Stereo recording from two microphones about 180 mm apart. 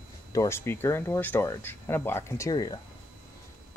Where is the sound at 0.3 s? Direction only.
15° left (ahead or behind).